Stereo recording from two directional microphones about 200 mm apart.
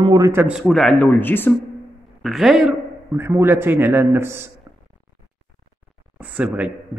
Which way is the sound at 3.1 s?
15° right (ahead or behind).